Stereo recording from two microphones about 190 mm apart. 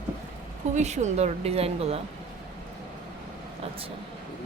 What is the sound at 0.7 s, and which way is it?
A woman's voice, 40° right (ahead or behind).